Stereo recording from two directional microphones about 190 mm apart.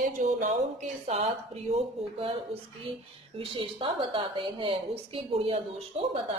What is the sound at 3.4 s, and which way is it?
A woman's voice, 30° right (ahead or behind).